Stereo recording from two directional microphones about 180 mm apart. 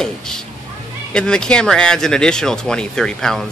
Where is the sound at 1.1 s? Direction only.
5° left (ahead or behind).